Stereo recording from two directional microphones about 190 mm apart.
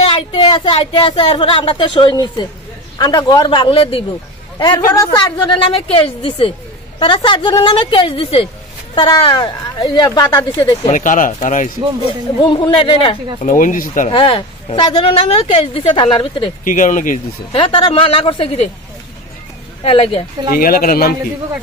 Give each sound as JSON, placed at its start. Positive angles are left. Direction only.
{"t": 0.0, "sound": "a woman's voice", "side_deg": 25}
{"t": 10.9, "sound": "speech", "side_deg": 40}
{"t": 12.4, "sound": "a woman's voice", "side_deg": 25}
{"t": 13.4, "sound": "speech", "side_deg": 45}
{"t": 14.1, "sound": "a woman's voice", "side_deg": 30}
{"t": 16.6, "sound": "speech", "side_deg": 45}
{"t": 17.5, "sound": "a woman's voice", "side_deg": 25}
{"t": 19.8, "sound": "a woman's voice", "side_deg": 30}
{"t": 20.4, "sound": "speech", "side_deg": 50}